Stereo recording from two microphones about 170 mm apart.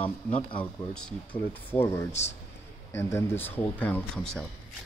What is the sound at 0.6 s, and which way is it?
Speech, 5° left (ahead or behind).